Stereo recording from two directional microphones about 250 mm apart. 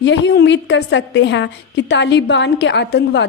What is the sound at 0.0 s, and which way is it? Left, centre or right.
A woman's voice, left.